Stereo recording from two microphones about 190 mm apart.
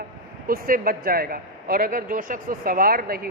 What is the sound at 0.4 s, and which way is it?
Speech, 50° right (ahead or behind).